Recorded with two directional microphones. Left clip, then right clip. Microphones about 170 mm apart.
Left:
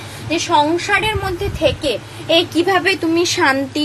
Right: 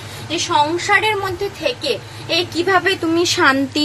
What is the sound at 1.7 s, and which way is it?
A woman's voice, centre (ahead or behind).